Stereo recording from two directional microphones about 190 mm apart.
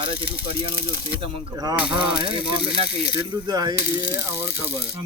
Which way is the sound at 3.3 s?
20° right (ahead or behind).